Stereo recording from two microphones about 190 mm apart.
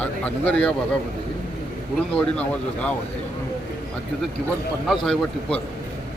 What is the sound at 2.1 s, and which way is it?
Speech, 5° left (ahead or behind).